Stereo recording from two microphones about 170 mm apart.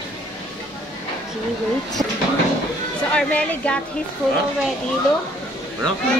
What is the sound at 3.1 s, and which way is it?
Speech, 5° left (ahead or behind).